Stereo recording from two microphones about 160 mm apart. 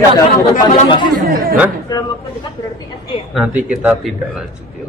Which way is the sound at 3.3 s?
5° right (ahead or behind).